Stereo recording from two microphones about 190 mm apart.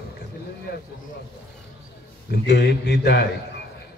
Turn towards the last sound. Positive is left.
turn(degrees=60)  # may be behind; listen again after turning